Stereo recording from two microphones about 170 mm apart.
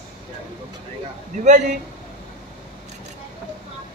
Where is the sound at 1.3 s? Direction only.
45° right (ahead or behind).